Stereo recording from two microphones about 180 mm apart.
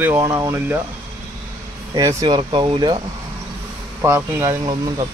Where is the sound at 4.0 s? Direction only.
15° right (ahead or behind).